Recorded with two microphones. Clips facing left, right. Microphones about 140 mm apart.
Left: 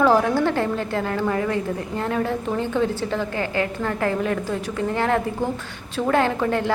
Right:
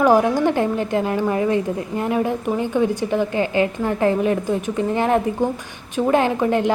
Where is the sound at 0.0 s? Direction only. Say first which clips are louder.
Right 2 dB; 15° right (ahead or behind).